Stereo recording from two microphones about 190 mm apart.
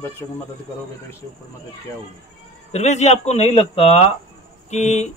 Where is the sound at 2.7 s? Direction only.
35° left (ahead or behind).